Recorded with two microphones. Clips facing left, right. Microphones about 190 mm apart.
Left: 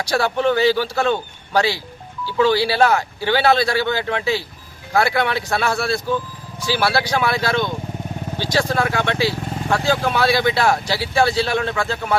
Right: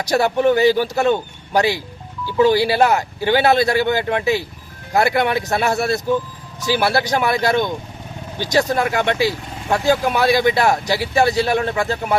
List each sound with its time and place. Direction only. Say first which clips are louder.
0.0 s speech: right 3 dB; 20° right (ahead or behind)